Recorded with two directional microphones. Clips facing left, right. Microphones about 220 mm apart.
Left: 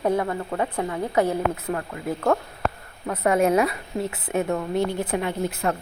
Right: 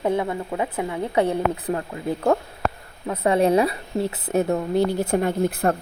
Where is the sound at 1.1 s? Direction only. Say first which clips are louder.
Right 1 dB; 30° right (ahead or behind); by 5.7 s 55° right (ahead or behind).